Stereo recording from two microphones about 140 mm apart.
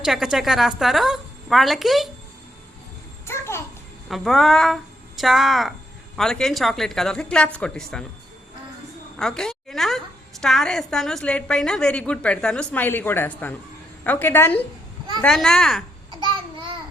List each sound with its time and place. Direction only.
0.0 s a woman's voice: 5° right (ahead or behind)
3.2 s a sound: 20° left (ahead or behind)
4.1 s a woman's voice: centre (ahead or behind)
9.1 s a woman's voice: 5° left (ahead or behind)
16.2 s babbling: 35° right (ahead or behind)